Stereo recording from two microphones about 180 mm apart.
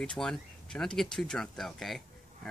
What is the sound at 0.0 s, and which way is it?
Speech, 5° left (ahead or behind).